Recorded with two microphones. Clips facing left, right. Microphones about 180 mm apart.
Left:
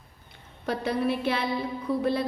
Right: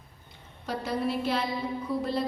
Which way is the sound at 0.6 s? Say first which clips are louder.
Left 3 dB; 60° left (ahead or behind).